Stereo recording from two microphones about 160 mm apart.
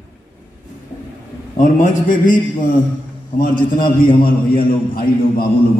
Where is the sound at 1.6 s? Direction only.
55° left (ahead or behind).